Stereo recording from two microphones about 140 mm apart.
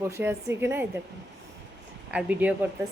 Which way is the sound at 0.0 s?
15° right (ahead or behind).